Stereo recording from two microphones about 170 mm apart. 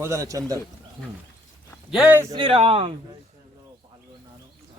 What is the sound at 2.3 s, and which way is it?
Speech, 30° right (ahead or behind).